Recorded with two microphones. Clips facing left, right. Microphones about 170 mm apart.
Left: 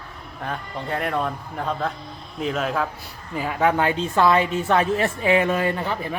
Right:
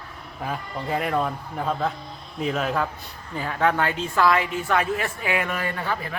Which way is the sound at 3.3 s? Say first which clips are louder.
Left 2 dB; 15° left (ahead or behind).